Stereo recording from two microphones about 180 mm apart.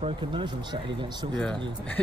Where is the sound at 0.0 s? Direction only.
30° right (ahead or behind).